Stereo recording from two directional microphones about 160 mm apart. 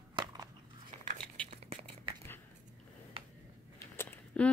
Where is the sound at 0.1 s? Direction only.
25° right (ahead or behind).